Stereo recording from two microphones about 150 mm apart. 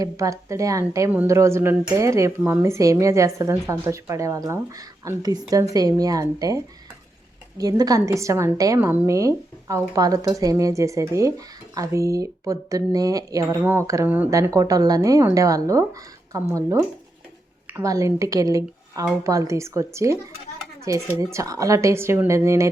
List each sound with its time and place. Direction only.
0.0 s a woman's voice: 20° right (ahead or behind)
7.6 s a woman's voice: 25° right (ahead or behind)
13.4 s a woman's voice: 15° right (ahead or behind)
21.2 s a woman's voice: 20° right (ahead or behind)